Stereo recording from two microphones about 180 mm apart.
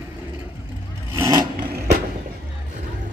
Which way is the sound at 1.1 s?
20° right (ahead or behind).